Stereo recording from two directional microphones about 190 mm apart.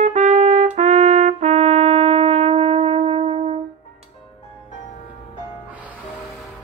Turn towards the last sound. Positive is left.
turn(degrees=-10)  # may be behind; listen again after turning